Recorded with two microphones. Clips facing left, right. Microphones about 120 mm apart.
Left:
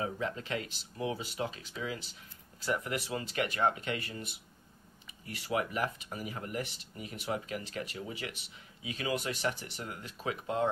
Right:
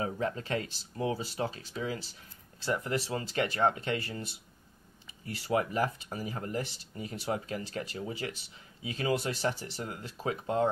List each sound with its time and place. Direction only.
0.0 s speech: 35° right (ahead or behind)